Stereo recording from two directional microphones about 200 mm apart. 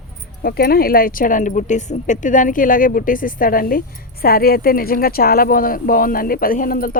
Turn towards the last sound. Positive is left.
turn(degrees=45)  # may be behind; listen again after turning